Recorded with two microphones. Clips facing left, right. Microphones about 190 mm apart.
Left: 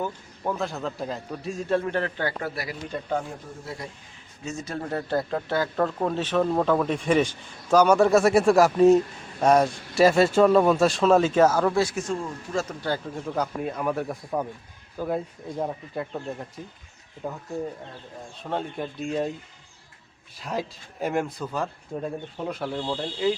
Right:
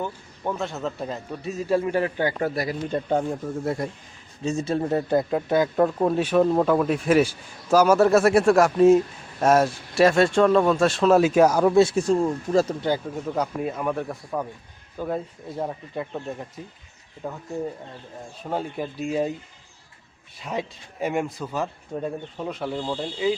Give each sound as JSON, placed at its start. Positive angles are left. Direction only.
{"t": 0.0, "sound": "a man's voice", "side_deg": 0}
{"t": 2.4, "sound": "speech", "side_deg": -35}
{"t": 3.6, "sound": "speech", "side_deg": -50}
{"t": 4.4, "sound": "a man's voice", "side_deg": -30}
{"t": 12.6, "sound": "speech", "side_deg": -20}
{"t": 13.1, "sound": "a man's voice", "side_deg": -10}
{"t": 18.5, "sound": "a man's voice", "side_deg": -5}
{"t": 20.3, "sound": "a man's voice", "side_deg": 0}